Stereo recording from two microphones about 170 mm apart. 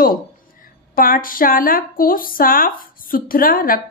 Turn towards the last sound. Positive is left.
turn(degrees=55)  # may be behind; listen again after turning